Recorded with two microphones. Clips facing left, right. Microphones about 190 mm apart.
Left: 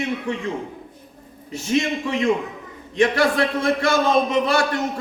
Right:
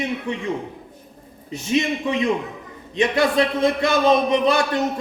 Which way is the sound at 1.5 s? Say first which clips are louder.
Even; 20° right (ahead or behind).